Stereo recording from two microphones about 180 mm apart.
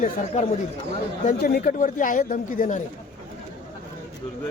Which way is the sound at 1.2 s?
50° left (ahead or behind).